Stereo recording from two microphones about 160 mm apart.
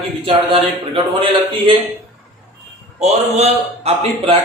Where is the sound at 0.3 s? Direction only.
35° right (ahead or behind).